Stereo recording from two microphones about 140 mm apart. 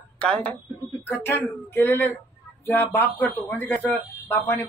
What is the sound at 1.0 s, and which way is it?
Speech, 15° left (ahead or behind).